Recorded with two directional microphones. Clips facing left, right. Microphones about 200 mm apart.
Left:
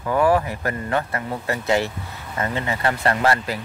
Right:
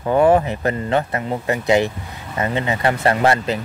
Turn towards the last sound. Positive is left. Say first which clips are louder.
# right 4 dB
turn(degrees=-20)  # may be behind; listen again after turning